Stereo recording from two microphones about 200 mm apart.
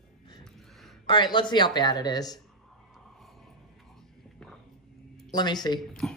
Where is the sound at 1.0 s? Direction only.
20° left (ahead or behind).